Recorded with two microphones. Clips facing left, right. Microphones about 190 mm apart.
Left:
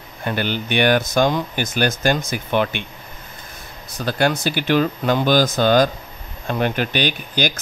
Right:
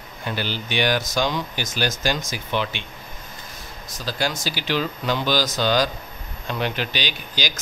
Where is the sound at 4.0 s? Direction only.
60° left (ahead or behind).